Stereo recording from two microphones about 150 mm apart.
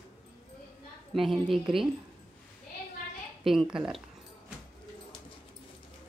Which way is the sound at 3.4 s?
Centre (ahead or behind).